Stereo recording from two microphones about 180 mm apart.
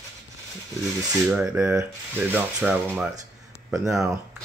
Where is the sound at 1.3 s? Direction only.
5° right (ahead or behind).